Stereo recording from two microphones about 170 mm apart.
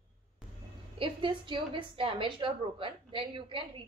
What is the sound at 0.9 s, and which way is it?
A woman's voice, 30° right (ahead or behind).